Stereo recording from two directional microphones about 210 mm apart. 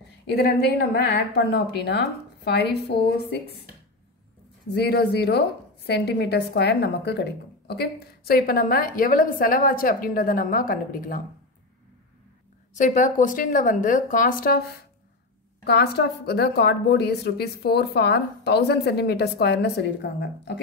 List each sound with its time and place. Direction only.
0.3 s speech: 50° left (ahead or behind)
4.7 s speech: 50° left (ahead or behind)
12.7 s speech: 35° left (ahead or behind)
15.6 s speech: 50° left (ahead or behind)